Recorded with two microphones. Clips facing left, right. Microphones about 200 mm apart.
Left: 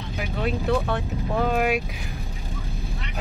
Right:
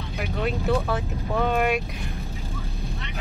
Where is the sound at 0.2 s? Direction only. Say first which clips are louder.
Even; centre (ahead or behind).